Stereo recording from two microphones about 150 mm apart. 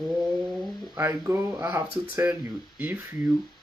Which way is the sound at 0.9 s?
15° right (ahead or behind).